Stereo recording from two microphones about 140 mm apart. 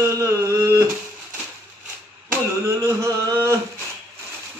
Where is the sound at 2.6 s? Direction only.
20° right (ahead or behind).